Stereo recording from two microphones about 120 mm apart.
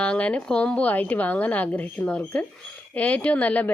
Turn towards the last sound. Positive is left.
turn(degrees=10)  # may be behind; listen again after turning